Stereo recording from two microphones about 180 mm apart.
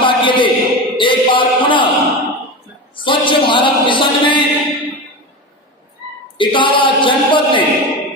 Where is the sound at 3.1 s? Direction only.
30° left (ahead or behind).